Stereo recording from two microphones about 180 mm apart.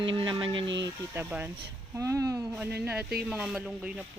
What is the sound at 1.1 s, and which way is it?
Speech, 10° right (ahead or behind).